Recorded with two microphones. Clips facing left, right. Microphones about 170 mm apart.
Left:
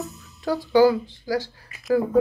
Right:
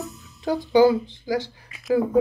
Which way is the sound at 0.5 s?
20° right (ahead or behind).